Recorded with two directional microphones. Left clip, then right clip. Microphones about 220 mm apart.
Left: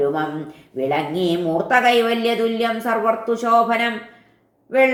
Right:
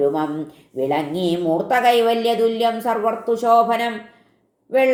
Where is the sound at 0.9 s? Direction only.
35° right (ahead or behind).